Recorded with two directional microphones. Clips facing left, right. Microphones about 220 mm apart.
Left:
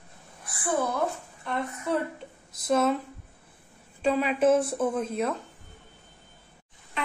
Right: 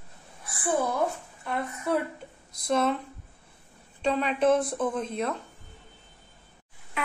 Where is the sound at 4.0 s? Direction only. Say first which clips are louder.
Left 2 dB; 5° left (ahead or behind).